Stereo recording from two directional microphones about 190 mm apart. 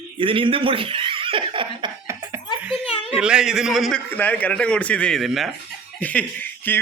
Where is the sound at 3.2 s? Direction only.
5° right (ahead or behind).